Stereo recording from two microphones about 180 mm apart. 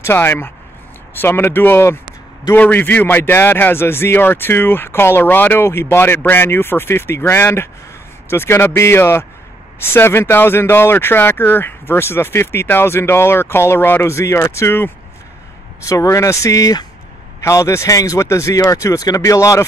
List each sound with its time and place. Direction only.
0.0 s a man's voice: 15° left (ahead or behind)